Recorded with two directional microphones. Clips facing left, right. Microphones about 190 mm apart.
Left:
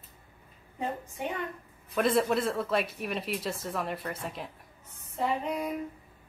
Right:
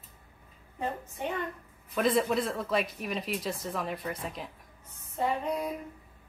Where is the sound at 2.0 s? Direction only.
Centre (ahead or behind).